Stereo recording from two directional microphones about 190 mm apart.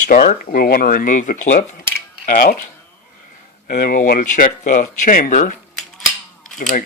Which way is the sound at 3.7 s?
50° left (ahead or behind).